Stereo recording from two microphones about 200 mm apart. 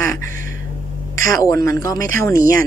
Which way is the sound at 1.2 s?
15° left (ahead or behind).